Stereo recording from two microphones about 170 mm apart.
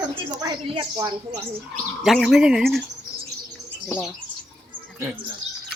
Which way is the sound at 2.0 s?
Centre (ahead or behind).